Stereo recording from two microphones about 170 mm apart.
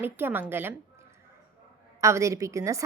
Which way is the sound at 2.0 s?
20° right (ahead or behind).